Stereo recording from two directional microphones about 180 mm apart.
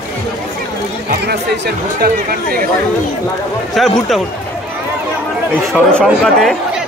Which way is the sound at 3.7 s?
Centre (ahead or behind).